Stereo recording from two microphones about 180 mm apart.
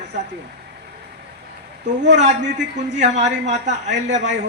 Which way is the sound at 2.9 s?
75° right (ahead or behind).